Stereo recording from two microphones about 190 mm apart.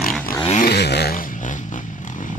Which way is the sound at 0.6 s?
60° left (ahead or behind).